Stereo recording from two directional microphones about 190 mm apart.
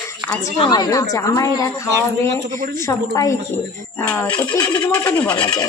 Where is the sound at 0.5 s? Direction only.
25° left (ahead or behind); by 4.3 s 5° left (ahead or behind).